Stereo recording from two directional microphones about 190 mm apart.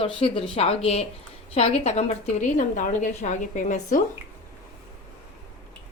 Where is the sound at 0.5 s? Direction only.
30° left (ahead or behind).